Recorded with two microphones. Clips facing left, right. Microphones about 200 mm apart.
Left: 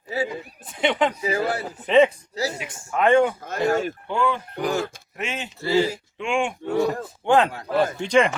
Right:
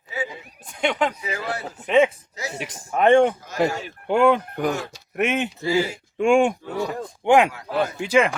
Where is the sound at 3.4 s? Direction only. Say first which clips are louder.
Left 1 dB; 55° left (ahead or behind).